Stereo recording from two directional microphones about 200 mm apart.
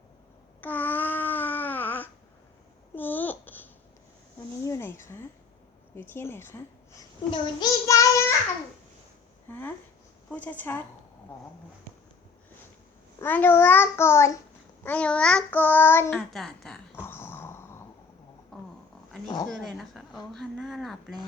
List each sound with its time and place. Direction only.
0.6 s babbling: 10° left (ahead or behind)
4.6 s a sound: 15° left (ahead or behind)
6.0 s a child's voice: 10° left (ahead or behind)
9.5 s a child's voice: 10° left (ahead or behind)
13.1 s a child's voice: 10° left (ahead or behind)
14.8 s child singing: 5° left (ahead or behind)
18.5 s a sound: 5° left (ahead or behind)
19.5 s speech: centre (ahead or behind)